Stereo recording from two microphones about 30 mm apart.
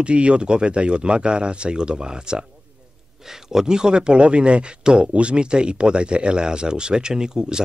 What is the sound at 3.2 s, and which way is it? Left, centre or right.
Speech, centre.